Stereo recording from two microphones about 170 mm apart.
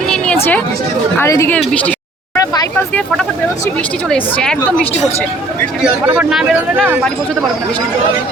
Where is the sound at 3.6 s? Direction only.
10° left (ahead or behind).